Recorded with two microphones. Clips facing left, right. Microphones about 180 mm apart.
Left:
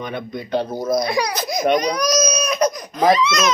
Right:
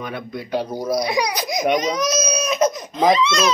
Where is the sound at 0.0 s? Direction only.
5° right (ahead or behind).